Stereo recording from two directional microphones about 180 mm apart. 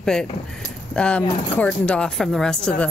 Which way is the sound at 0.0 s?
5° left (ahead or behind).